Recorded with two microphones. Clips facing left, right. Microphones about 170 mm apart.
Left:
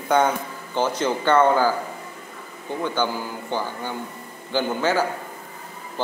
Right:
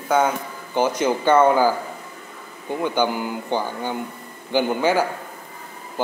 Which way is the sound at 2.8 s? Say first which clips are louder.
Right 3 dB; 15° right (ahead or behind).